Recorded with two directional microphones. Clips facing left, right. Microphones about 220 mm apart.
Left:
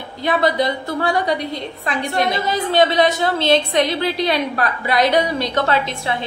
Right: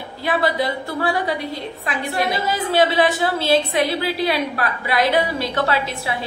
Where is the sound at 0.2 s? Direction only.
5° right (ahead or behind).